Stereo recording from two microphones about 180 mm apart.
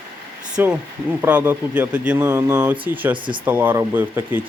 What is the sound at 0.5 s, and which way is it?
Speech, 5° right (ahead or behind).